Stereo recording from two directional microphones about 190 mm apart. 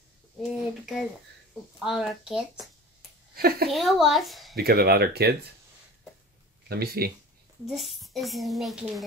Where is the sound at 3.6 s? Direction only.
Centre (ahead or behind).